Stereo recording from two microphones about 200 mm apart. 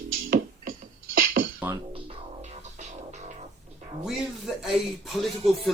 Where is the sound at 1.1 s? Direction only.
45° right (ahead or behind).